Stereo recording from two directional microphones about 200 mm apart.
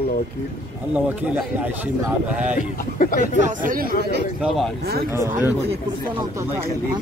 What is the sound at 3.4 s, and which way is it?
Speech, 45° right (ahead or behind).